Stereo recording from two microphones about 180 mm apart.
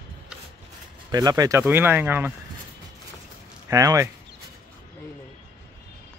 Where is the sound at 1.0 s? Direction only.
20° right (ahead or behind).